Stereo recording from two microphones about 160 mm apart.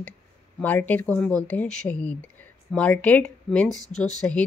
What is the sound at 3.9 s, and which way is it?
Speech, 45° left (ahead or behind).